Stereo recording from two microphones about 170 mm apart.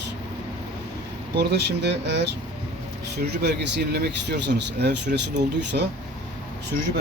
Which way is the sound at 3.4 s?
75° right (ahead or behind).